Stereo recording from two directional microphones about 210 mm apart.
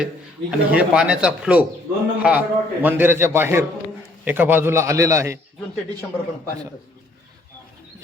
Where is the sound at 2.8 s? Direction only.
10° right (ahead or behind).